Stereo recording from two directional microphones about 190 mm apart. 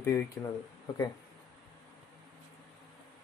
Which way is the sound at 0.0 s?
15° left (ahead or behind).